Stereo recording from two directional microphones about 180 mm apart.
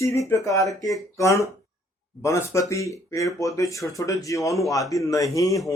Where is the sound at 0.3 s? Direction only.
15° left (ahead or behind).